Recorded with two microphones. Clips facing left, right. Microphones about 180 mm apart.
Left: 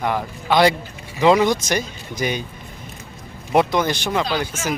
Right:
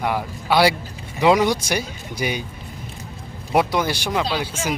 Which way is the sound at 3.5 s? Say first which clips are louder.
Left 2 dB; 5° right (ahead or behind).